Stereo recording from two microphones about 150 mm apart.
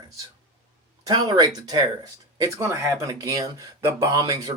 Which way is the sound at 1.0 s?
25° right (ahead or behind).